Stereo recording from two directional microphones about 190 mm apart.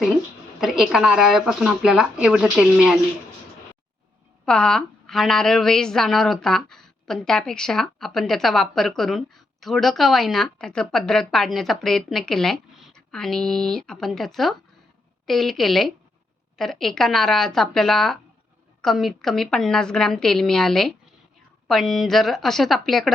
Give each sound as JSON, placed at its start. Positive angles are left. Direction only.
{"t": 0.6, "sound": "a woman's voice", "side_deg": 0}
{"t": 4.4, "sound": "a woman's voice", "side_deg": 5}